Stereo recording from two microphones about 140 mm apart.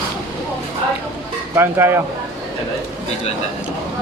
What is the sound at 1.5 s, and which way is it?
Speech, 15° right (ahead or behind).